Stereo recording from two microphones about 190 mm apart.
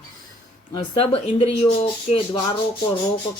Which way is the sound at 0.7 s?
25° left (ahead or behind).